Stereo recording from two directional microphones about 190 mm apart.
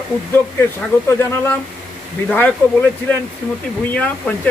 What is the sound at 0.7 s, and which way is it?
A man's voice, 10° left (ahead or behind).